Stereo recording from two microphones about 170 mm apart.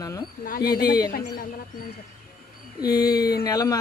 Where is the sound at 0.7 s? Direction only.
25° left (ahead or behind).